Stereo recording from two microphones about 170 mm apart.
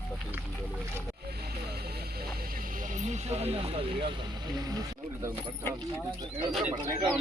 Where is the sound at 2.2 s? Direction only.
55° right (ahead or behind); by 4.1 s 35° right (ahead or behind).